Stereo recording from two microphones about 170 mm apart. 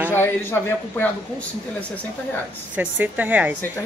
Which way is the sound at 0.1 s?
10° left (ahead or behind).